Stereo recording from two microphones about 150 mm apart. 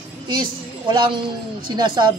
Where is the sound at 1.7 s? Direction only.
30° right (ahead or behind).